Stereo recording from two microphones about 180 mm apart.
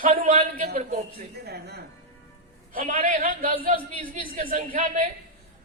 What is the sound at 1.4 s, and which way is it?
Speech, 65° right (ahead or behind).